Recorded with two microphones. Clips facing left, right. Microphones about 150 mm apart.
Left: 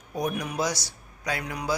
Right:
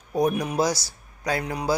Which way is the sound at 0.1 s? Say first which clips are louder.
Right 6 dB; 30° right (ahead or behind).